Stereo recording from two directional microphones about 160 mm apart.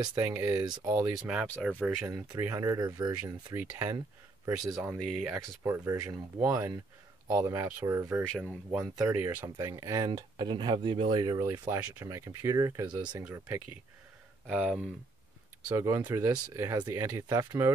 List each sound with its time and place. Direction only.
0.1 s speech: 15° right (ahead or behind)
5.0 s speech: centre (ahead or behind)
5.3 s speech: 15° right (ahead or behind)
12.8 s speech: 10° right (ahead or behind)
15.7 s speech: 20° right (ahead or behind)